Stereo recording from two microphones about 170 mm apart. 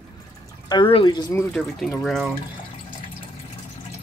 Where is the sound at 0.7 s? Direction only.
30° left (ahead or behind).